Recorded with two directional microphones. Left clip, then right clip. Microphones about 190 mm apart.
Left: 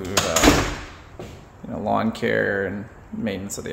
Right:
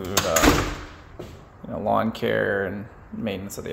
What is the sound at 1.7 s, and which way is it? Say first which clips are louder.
Speech: even; 5° left (ahead or behind).